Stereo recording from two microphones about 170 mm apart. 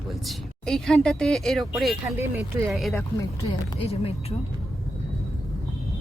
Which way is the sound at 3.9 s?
35° left (ahead or behind).